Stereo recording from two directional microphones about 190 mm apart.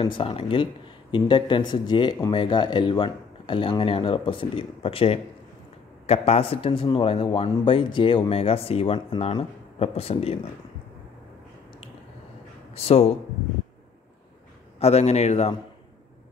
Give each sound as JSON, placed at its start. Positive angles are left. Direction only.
{"t": 0.0, "sound": "a man's voice", "side_deg": 30}
{"t": 12.7, "sound": "a man's voice", "side_deg": 35}
{"t": 14.8, "sound": "a man's voice", "side_deg": 35}